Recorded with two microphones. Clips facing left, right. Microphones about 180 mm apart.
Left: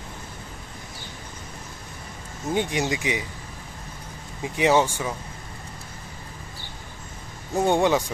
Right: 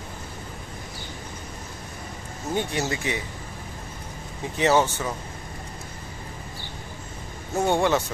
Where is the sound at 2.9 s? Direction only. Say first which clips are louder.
Left 2 dB; 15° left (ahead or behind).